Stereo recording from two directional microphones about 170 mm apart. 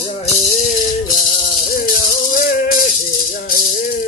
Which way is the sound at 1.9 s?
60° left (ahead or behind).